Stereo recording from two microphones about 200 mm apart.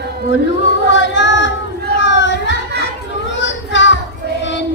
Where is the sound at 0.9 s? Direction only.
65° left (ahead or behind).